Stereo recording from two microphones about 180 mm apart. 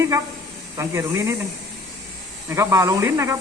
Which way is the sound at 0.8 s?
15° right (ahead or behind).